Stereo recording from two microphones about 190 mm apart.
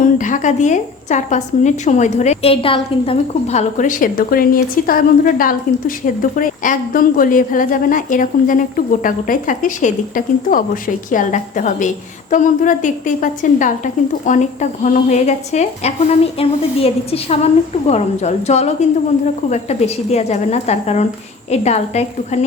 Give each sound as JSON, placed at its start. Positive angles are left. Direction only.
{"t": 0.0, "sound": "a woman's voice", "side_deg": 40}